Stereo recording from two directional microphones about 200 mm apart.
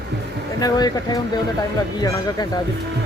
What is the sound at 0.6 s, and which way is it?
A man's voice, 20° left (ahead or behind).